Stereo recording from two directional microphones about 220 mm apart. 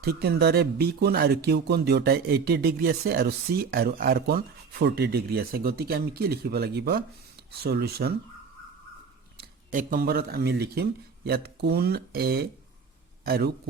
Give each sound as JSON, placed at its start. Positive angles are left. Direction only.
{"t": 0.0, "sound": "speech", "side_deg": -45}
{"t": 9.4, "sound": "speech", "side_deg": -40}